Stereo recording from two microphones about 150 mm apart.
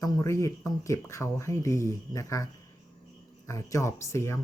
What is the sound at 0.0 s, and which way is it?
Speech, 20° left (ahead or behind).